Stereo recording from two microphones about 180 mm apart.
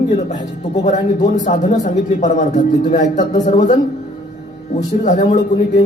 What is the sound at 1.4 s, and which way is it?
A man's voice, 40° left (ahead or behind).